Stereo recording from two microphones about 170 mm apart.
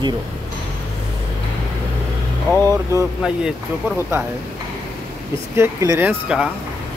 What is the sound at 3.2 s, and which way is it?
Speech, 5° right (ahead or behind).